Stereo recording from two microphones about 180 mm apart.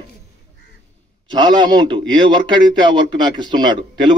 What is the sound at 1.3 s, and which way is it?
A man's voice, 25° right (ahead or behind).